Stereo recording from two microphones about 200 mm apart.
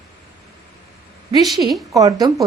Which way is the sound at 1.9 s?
20° right (ahead or behind).